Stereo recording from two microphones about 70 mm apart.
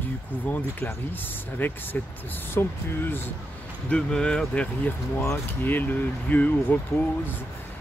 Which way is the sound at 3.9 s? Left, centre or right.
Centre.